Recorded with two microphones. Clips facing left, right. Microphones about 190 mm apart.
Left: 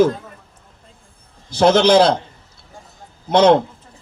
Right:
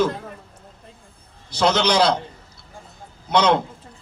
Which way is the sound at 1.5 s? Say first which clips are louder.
Left 7 dB; 50° left (ahead or behind).